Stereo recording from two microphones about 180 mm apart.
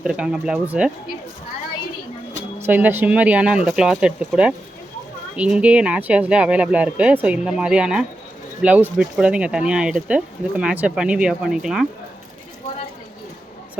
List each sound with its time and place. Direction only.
0.0 s speech: 5° right (ahead or behind)
2.6 s speech: 10° right (ahead or behind)